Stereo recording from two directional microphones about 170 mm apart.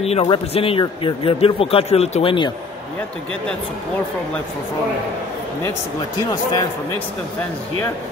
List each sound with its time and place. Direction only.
0.0 s a man's voice: 35° left (ahead or behind)